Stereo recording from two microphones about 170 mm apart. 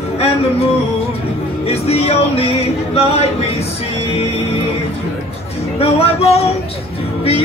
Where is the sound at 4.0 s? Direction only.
35° left (ahead or behind).